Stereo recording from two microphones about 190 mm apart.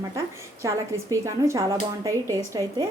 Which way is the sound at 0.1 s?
15° right (ahead or behind).